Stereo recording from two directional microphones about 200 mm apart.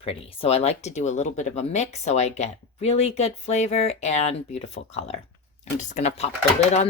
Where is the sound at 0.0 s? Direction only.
30° left (ahead or behind).